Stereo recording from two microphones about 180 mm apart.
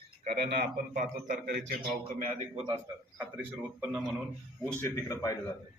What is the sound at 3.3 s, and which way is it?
Speech, 5° right (ahead or behind).